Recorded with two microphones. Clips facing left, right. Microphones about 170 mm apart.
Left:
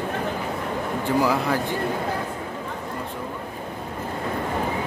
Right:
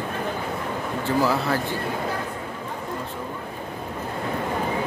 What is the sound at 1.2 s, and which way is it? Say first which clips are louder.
Speech: even; 15° left (ahead or behind).